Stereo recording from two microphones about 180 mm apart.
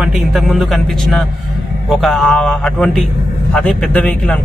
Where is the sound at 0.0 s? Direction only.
Centre (ahead or behind).